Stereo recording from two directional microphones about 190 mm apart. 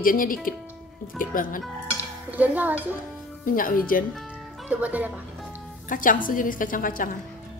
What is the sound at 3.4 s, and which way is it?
Speech, 45° left (ahead or behind).